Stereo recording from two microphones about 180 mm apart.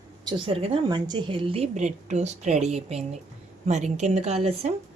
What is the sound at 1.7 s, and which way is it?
Speech, 40° right (ahead or behind).